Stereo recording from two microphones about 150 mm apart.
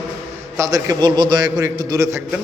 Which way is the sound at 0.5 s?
20° right (ahead or behind).